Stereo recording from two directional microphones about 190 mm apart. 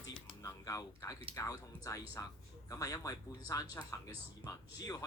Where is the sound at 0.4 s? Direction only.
15° left (ahead or behind).